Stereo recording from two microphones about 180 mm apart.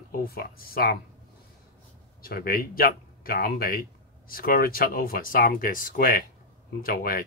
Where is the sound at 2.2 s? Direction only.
55° left (ahead or behind).